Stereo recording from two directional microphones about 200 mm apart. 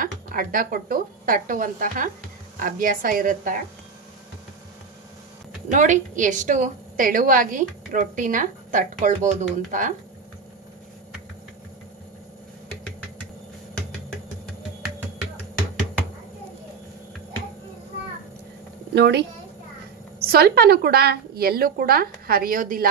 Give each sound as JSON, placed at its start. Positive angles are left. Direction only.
{"t": 0.0, "sound": "a woman's voice", "side_deg": -45}
{"t": 5.7, "sound": "a woman's voice", "side_deg": -40}
{"t": 18.9, "sound": "a woman's voice", "side_deg": -60}